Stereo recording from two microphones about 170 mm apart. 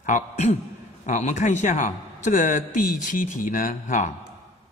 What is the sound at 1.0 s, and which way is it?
A man's voice, 45° left (ahead or behind).